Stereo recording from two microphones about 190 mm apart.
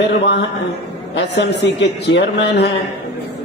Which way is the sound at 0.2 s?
65° left (ahead or behind).